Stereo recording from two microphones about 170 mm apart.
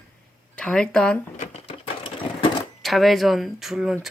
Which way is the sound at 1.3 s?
40° left (ahead or behind).